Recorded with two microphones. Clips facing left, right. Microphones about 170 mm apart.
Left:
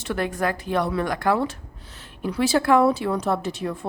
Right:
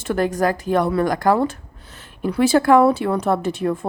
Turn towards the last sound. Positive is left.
turn(degrees=-55)  # may be behind; listen again after turning